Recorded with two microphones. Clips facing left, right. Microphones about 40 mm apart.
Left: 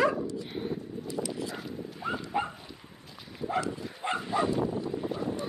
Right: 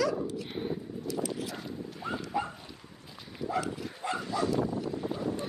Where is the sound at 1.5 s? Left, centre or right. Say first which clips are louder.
Left 1 dB; centre.